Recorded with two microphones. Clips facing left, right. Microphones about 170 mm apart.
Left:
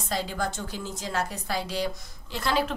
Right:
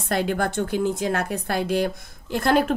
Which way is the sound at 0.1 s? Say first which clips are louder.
Right 7 dB; 60° right (ahead or behind).